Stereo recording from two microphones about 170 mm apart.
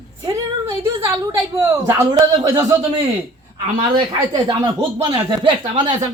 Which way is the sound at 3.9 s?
25° right (ahead or behind).